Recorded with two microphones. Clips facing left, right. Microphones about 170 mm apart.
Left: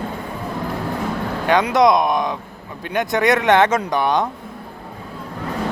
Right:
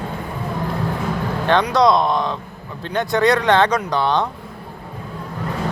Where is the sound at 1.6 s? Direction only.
20° left (ahead or behind).